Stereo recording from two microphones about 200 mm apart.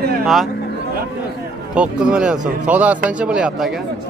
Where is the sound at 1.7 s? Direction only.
5° right (ahead or behind).